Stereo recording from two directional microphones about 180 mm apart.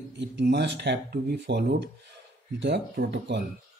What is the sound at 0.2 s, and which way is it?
Speech, 70° right (ahead or behind).